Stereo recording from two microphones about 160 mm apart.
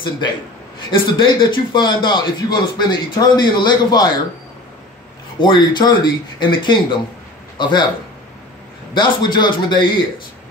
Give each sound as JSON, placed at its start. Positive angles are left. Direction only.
{"t": 0.9, "sound": "speech", "side_deg": 30}
{"t": 5.4, "sound": "speech", "side_deg": 30}
{"t": 8.9, "sound": "speech", "side_deg": 30}